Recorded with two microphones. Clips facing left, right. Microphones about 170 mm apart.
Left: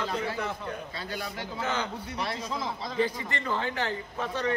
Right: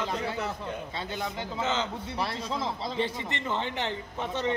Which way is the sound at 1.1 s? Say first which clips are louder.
Right 1 dB; 20° right (ahead or behind).